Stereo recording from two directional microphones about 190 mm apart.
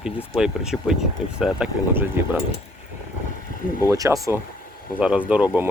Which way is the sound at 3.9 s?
15° right (ahead or behind).